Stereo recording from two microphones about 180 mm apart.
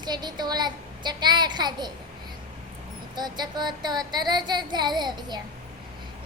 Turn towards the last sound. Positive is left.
turn(degrees=-25)  # may be behind; listen again after turning